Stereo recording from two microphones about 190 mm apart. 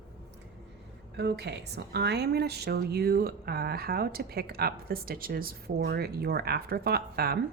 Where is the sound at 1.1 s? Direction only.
60° right (ahead or behind).